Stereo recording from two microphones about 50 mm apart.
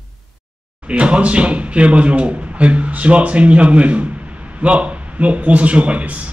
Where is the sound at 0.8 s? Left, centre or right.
Right.